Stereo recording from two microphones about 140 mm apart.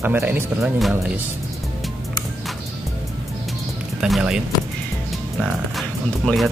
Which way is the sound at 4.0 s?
5° right (ahead or behind).